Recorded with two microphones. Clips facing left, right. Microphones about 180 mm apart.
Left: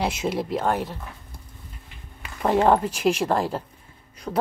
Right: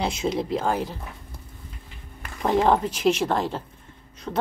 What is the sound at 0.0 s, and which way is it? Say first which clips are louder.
Speech: even; 5° left (ahead or behind).